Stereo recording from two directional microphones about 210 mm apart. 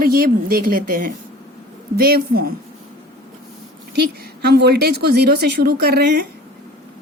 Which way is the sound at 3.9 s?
50° right (ahead or behind).